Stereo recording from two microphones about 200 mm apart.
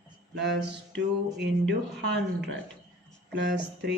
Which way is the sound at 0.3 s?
60° right (ahead or behind).